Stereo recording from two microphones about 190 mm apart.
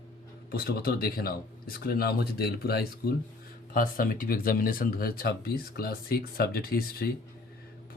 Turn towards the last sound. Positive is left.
turn(degrees=50)  # may be behind; listen again after turning